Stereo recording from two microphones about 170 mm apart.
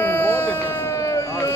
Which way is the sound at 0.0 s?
15° left (ahead or behind).